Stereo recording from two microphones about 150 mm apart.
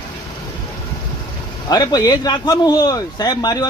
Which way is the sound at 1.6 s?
25° left (ahead or behind).